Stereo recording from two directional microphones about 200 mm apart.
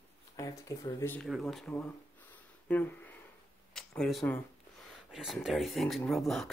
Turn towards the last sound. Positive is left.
turn(degrees=0)  # may be behind; listen again after turning